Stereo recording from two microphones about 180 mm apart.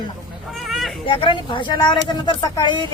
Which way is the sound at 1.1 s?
30° left (ahead or behind).